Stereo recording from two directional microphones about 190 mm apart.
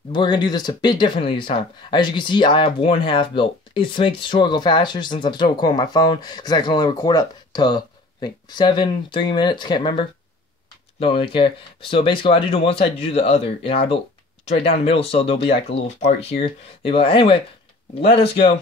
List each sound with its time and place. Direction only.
0.1 s speech: 25° left (ahead or behind)